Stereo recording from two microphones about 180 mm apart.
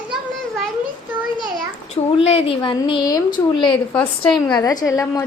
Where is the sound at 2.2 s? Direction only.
30° left (ahead or behind).